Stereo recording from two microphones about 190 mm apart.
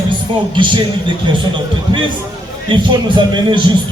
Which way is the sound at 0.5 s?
25° right (ahead or behind).